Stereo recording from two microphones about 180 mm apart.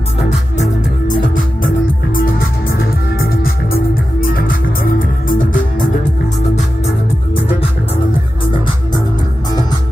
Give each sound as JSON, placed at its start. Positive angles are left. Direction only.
{"t": 1.0, "sound": "music", "side_deg": 50}
{"t": 9.5, "sound": "music", "side_deg": 20}